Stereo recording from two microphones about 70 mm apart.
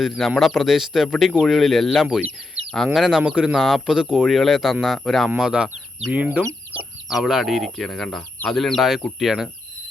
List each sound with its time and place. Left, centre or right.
0.0 s speech: centre
4.3 s speech: centre
5.4 s speech: centre
6.1 s speech: right
7.1 s speech: centre